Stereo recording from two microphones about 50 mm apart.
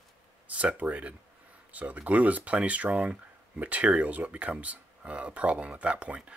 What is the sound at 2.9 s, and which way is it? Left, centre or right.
Speech, centre.